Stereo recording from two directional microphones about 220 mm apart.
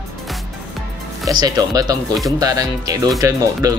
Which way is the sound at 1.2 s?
15° right (ahead or behind).